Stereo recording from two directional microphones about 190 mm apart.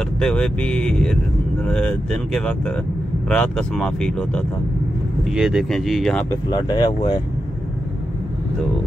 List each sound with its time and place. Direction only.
0.2 s speech: 5° left (ahead or behind)
5.3 s speech: 5° right (ahead or behind)
6.5 s speech: 20° left (ahead or behind)